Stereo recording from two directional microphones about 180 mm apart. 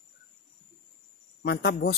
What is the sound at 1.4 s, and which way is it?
Speech, 60° left (ahead or behind).